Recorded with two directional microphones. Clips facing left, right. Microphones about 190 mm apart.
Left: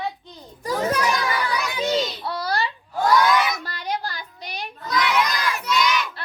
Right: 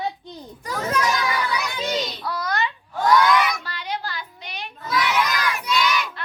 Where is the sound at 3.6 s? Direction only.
45° left (ahead or behind).